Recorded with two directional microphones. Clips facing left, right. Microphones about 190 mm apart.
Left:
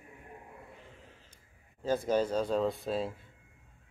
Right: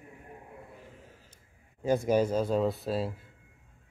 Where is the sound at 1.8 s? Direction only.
10° right (ahead or behind).